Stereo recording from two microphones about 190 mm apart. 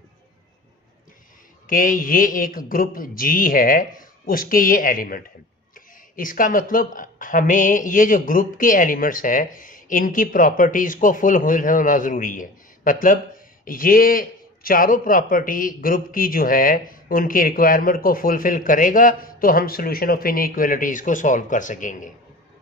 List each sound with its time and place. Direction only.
1.7 s speech: 45° left (ahead or behind)